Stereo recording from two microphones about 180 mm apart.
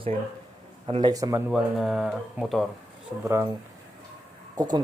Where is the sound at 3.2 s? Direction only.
15° right (ahead or behind).